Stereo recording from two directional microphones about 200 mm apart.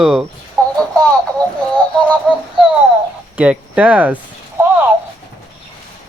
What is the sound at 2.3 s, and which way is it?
Speech, 5° left (ahead or behind).